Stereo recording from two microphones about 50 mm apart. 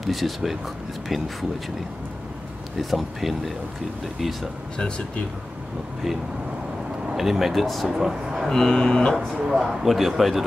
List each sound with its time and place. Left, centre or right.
0.0 s a man's voice: centre
2.8 s a man's voice: centre
4.7 s speech: centre
7.2 s a man's voice: centre
7.9 s speech: centre
8.5 s speech: centre
9.4 s a man's voice: centre